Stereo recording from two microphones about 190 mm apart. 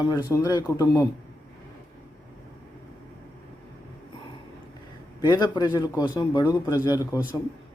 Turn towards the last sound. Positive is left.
turn(degrees=20)  # may be behind; listen again after turning